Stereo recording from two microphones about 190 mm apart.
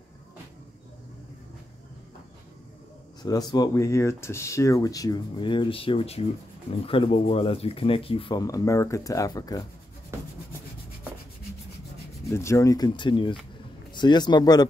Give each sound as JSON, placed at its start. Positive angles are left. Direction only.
{"t": 3.2, "sound": "speech", "side_deg": 20}
{"t": 12.3, "sound": "speech", "side_deg": 15}